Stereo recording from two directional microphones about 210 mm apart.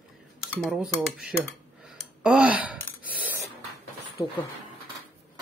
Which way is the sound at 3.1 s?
10° right (ahead or behind).